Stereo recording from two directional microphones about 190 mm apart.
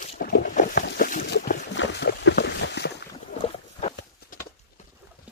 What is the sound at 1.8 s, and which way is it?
Boat, 65° left (ahead or behind).